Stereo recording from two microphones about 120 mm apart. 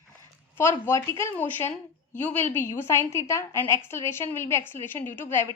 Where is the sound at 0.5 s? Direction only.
20° left (ahead or behind).